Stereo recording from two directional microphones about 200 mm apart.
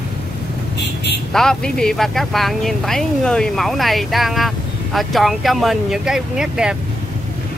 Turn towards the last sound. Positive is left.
turn(degrees=-5)  # may be behind; listen again after turning